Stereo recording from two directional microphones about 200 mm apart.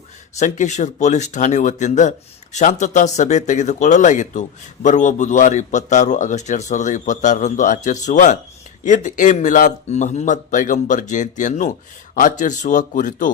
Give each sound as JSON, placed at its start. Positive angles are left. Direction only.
{"t": 0.3, "sound": "speech", "side_deg": 35}